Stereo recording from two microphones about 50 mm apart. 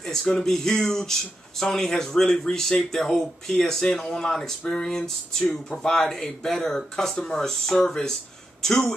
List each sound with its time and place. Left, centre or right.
0.0 s speech: centre